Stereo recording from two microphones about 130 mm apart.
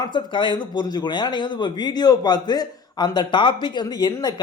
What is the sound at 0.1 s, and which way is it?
Speech, 35° left (ahead or behind).